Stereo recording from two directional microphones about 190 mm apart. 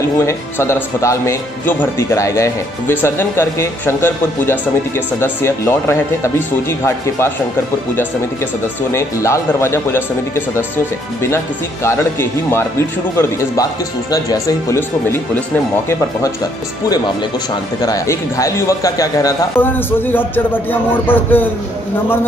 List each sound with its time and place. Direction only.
0.2 s speech: 15° left (ahead or behind)
8.9 s speech: 15° left (ahead or behind)
17.8 s speech: 20° left (ahead or behind)